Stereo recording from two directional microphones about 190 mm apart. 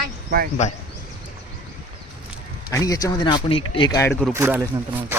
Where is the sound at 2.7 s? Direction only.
15° left (ahead or behind).